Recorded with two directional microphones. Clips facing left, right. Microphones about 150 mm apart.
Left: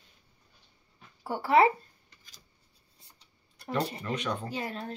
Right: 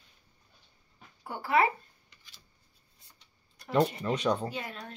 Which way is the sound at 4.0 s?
35° right (ahead or behind).